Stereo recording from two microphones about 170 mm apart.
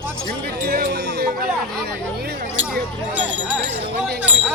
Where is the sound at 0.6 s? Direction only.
75° right (ahead or behind).